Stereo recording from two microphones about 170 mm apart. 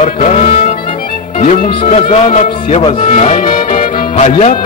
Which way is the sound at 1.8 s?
35° left (ahead or behind).